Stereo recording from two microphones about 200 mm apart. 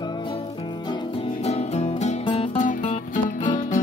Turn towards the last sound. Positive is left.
turn(degrees=40)  # may be behind; listen again after turning